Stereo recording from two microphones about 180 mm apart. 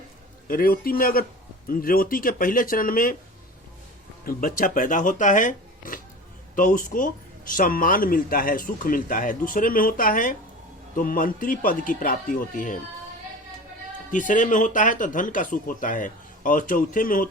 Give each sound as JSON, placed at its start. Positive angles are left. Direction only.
{"t": 0.4, "sound": "speech", "side_deg": 55}
{"t": 4.3, "sound": "speech", "side_deg": 50}
{"t": 14.1, "sound": "speech", "side_deg": 45}